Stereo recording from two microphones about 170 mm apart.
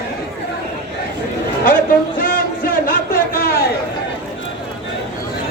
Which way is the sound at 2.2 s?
55° left (ahead or behind).